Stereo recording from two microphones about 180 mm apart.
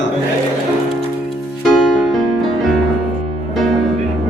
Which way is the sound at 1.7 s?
Centre (ahead or behind).